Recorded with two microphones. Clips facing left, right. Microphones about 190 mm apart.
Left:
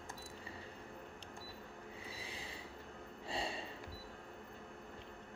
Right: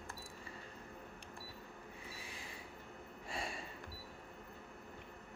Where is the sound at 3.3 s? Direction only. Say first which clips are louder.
Left 3 dB; 25° left (ahead or behind).